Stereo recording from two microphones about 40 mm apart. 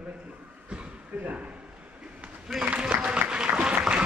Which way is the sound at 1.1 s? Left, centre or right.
Right.